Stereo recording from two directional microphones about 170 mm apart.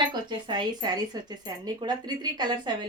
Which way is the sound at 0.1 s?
25° right (ahead or behind).